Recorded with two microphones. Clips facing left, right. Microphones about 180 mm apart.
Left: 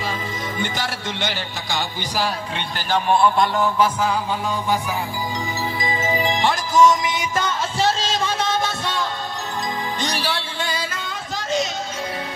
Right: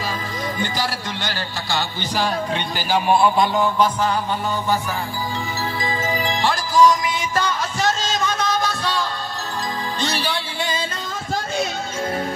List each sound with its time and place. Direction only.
0.6 s music: 25° left (ahead or behind); by 4.1 s 5° left (ahead or behind)
5.8 s music: 20° left (ahead or behind)